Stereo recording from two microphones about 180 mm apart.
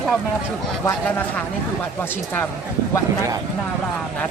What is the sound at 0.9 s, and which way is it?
Speech, 10° left (ahead or behind).